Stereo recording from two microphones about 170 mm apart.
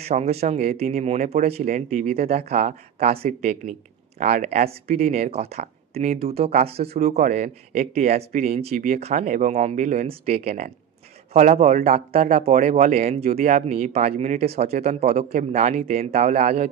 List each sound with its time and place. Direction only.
0.0 s a man's voice: 40° right (ahead or behind)
4.2 s a man's voice: 45° right (ahead or behind)